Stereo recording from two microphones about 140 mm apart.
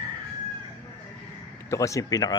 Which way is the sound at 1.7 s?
20° left (ahead or behind).